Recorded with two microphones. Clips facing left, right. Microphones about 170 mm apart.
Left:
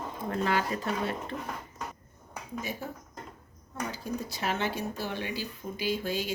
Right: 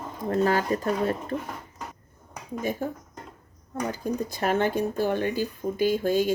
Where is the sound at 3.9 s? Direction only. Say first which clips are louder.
Right 6 dB; 50° right (ahead or behind).